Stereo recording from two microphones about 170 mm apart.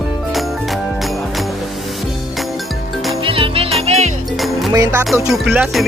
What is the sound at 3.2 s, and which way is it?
Music, 30° right (ahead or behind).